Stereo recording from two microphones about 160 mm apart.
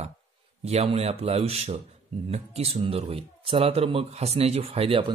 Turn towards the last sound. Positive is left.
turn(degrees=-35)  # may be behind; listen again after turning